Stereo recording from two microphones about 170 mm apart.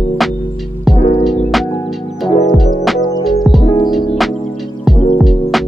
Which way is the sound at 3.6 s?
30° left (ahead or behind).